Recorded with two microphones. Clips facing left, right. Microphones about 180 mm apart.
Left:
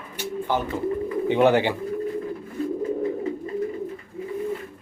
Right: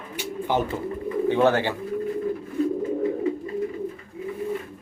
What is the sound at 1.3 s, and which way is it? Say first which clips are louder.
Speech: left 2 dB; 15° left (ahead or behind).